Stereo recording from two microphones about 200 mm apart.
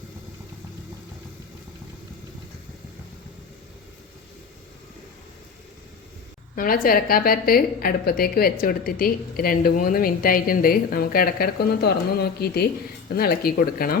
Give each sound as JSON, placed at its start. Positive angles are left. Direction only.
{"t": 6.6, "sound": "a woman's voice", "side_deg": 45}